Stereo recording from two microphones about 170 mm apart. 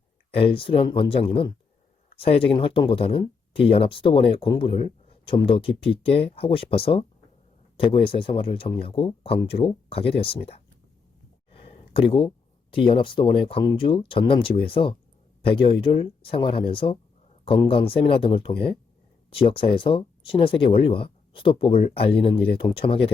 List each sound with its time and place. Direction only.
0.3 s speech: 35° left (ahead or behind)
11.5 s a sound: 35° left (ahead or behind)
12.7 s speech: 30° left (ahead or behind)